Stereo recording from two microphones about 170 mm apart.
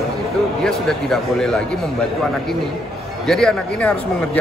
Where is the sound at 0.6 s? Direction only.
5° left (ahead or behind).